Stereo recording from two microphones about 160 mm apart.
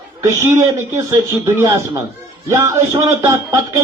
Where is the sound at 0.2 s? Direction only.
15° right (ahead or behind).